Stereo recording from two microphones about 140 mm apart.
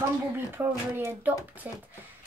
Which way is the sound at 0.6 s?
15° right (ahead or behind).